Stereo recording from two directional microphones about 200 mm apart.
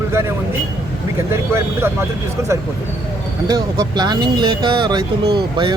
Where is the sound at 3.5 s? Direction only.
20° right (ahead or behind).